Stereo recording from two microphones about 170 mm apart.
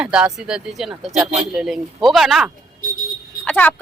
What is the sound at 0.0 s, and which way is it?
Speech, 5° right (ahead or behind).